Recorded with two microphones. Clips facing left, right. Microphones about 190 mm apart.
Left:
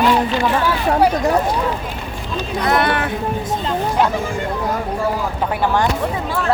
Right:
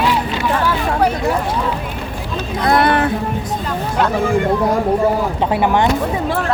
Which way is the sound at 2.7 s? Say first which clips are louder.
Right 4 dB; 35° right (ahead or behind).